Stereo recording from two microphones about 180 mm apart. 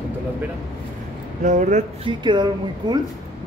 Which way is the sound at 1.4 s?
40° right (ahead or behind).